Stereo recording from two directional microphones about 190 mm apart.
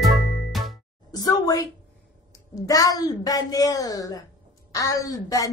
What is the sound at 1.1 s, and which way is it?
A woman's voice, 20° left (ahead or behind).